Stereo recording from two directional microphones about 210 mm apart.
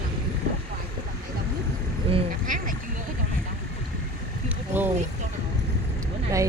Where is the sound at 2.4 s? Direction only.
40° right (ahead or behind).